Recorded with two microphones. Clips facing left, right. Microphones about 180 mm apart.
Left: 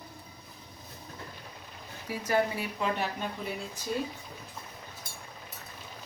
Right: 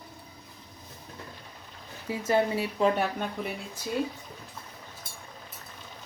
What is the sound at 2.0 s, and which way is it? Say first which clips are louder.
Speech: right 3 dB; 25° right (ahead or behind).